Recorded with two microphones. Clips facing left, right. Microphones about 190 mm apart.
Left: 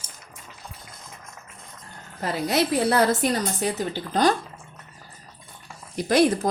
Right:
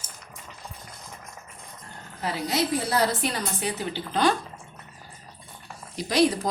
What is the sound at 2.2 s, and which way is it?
A woman's voice, 55° left (ahead or behind).